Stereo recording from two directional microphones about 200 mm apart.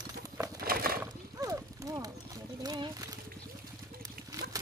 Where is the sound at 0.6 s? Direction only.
50° right (ahead or behind).